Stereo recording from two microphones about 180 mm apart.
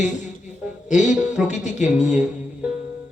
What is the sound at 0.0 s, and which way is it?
Music, 40° left (ahead or behind).